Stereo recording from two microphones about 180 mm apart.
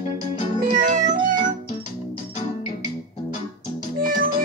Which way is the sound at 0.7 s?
45° right (ahead or behind).